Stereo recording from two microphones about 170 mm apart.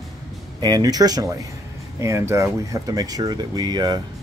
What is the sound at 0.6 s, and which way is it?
Speech, 25° right (ahead or behind).